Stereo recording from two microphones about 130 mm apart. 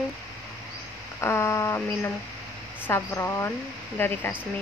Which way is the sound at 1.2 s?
20° left (ahead or behind).